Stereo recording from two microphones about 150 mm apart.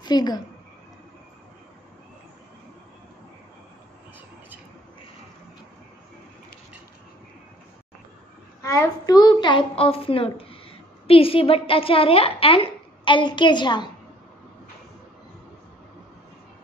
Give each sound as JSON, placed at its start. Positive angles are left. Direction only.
{"t": 0.0, "sound": "a woman's voice", "side_deg": 25}
{"t": 8.6, "sound": "a child's voice", "side_deg": 25}